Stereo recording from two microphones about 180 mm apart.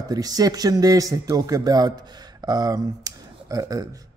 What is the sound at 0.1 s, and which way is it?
Speech, 20° right (ahead or behind).